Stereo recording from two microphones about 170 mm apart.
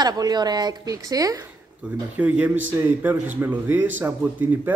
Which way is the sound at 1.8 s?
5° right (ahead or behind).